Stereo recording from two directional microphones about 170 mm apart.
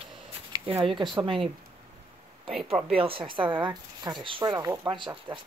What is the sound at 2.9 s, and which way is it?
Speech, 35° right (ahead or behind).